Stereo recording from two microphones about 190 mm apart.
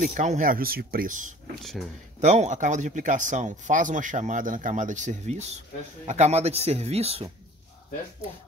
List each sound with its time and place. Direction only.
0.1 s speech: 40° right (ahead or behind)
1.5 s speech: centre (ahead or behind)
2.1 s speech: 35° right (ahead or behind)